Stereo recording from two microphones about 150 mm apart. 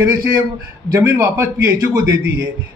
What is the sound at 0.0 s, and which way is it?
A man's voice, 20° right (ahead or behind).